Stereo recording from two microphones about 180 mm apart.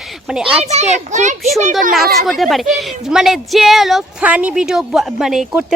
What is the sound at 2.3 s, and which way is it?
A woman's voice, centre (ahead or behind).